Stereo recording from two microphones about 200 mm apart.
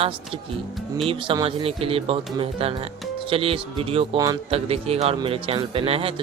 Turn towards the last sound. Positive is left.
turn(degrees=-30)  # may be behind; listen again after turning